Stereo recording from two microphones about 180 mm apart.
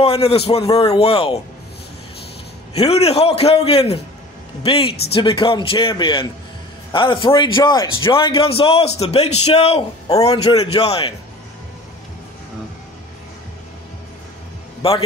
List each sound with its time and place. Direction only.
0.0 s a man's voice: 35° left (ahead or behind)
2.7 s a man's voice: 35° left (ahead or behind)
14.8 s speech: 30° left (ahead or behind)